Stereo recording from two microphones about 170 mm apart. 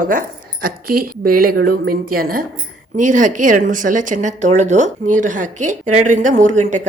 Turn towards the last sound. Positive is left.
turn(degrees=-45)  # may be behind; listen again after turning